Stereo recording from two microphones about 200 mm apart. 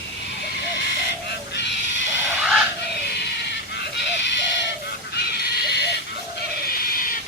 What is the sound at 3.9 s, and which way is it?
Owl, 60° left (ahead or behind).